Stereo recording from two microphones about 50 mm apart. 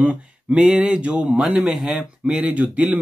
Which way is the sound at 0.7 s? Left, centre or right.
Centre.